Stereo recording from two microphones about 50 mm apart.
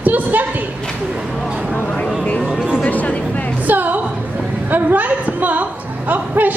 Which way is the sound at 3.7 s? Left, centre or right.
Right.